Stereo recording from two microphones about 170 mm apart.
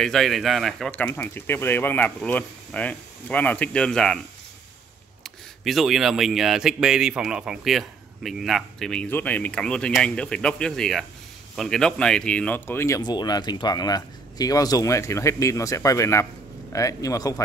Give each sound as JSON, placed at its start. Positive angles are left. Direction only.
{"t": 0.0, "sound": "speech", "side_deg": 0}
{"t": 5.2, "sound": "a man's voice", "side_deg": 0}